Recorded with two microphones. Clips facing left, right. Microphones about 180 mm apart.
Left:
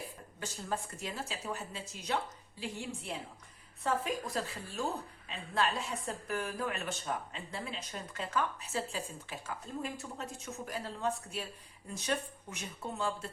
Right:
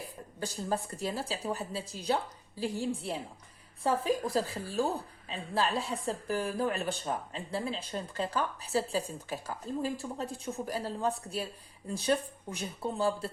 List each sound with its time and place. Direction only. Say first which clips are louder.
0.3 s a woman's voice: right 5 dB; 35° right (ahead or behind)